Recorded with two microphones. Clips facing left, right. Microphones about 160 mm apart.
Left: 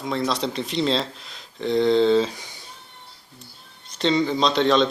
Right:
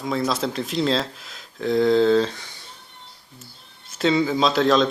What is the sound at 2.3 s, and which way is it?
Speech, 15° left (ahead or behind).